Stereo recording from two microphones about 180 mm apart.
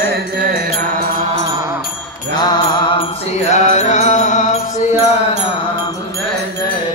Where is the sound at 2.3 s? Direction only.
25° left (ahead or behind).